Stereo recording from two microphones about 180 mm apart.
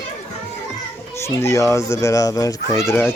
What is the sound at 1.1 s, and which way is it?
Speech, 15° left (ahead or behind).